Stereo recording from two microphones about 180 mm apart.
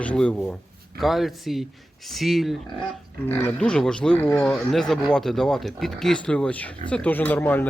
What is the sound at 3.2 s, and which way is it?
Speech, 10° left (ahead or behind).